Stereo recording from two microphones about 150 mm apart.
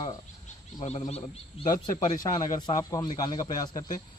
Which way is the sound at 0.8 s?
45° left (ahead or behind).